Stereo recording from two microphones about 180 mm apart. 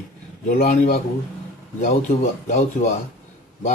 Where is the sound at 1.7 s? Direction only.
45° left (ahead or behind).